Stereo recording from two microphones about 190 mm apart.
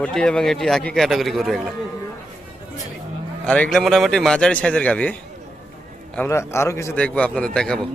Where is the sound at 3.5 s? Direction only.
5° left (ahead or behind).